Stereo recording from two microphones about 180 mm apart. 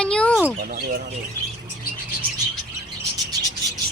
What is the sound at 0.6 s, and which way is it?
Speech, 55° right (ahead or behind).